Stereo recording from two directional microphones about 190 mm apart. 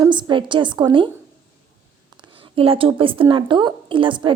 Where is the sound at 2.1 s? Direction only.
25° right (ahead or behind).